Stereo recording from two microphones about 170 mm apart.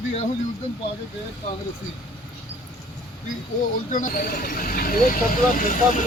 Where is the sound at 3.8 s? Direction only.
50° left (ahead or behind).